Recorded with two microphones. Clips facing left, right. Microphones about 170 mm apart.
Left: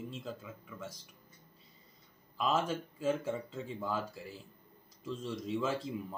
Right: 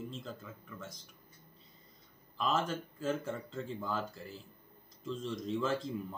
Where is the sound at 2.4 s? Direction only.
5° left (ahead or behind).